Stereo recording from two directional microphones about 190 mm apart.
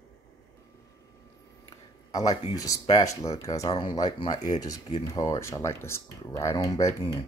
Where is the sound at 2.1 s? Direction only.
20° left (ahead or behind).